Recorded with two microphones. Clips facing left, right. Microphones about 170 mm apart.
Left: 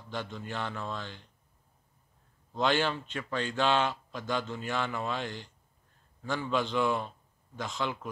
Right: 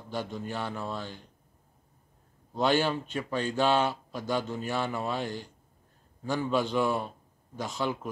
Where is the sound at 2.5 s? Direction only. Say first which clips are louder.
Right 2 dB; 10° right (ahead or behind).